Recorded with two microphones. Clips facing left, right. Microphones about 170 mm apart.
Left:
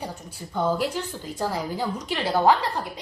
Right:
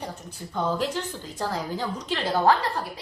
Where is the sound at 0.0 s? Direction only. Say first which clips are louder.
Left 1 dB; 10° left (ahead or behind).